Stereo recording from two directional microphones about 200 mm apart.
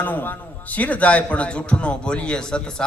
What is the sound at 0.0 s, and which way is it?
A man's voice, 10° left (ahead or behind).